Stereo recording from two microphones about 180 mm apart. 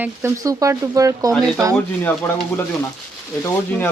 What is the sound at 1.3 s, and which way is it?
Speech, centre (ahead or behind).